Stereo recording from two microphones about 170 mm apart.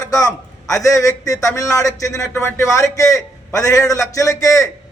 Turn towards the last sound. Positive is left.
turn(degrees=20)  # may be behind; listen again after turning